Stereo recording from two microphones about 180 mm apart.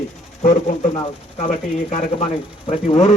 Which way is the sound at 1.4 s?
45° left (ahead or behind).